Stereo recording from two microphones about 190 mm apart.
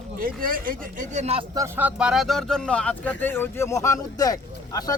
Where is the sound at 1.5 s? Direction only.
15° right (ahead or behind).